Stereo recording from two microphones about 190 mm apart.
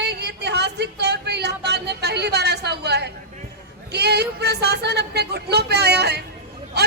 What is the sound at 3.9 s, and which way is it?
A man's voice, 60° right (ahead or behind).